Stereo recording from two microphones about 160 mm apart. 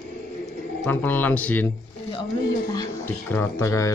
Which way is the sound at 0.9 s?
10° left (ahead or behind).